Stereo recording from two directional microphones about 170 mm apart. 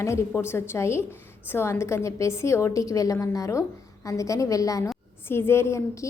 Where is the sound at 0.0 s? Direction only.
15° left (ahead or behind).